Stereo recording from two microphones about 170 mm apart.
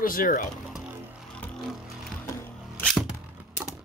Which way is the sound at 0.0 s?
55° left (ahead or behind).